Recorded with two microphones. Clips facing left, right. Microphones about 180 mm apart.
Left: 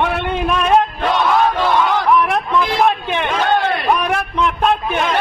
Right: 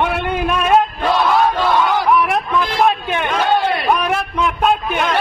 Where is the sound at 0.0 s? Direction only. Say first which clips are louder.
Even; centre (ahead or behind).